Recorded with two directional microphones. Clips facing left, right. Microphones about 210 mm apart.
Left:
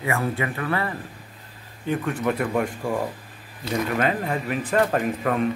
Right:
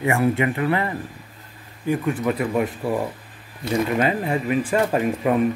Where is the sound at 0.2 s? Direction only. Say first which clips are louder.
Right 6 dB; 20° right (ahead or behind).